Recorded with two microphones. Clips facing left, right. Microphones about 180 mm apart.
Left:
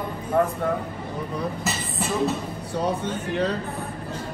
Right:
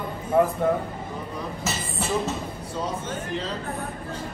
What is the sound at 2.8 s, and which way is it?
Speech, 60° left (ahead or behind).